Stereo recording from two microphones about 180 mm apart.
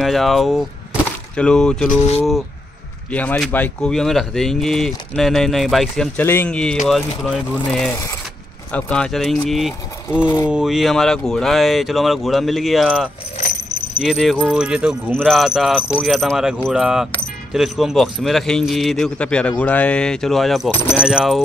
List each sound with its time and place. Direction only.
0.0 s speech: centre (ahead or behind)
3.1 s speech: 10° left (ahead or behind)
10.2 s speech: 15° left (ahead or behind)
10.5 s speech: centre (ahead or behind)